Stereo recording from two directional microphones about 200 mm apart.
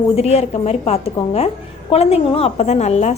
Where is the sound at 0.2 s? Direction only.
30° left (ahead or behind).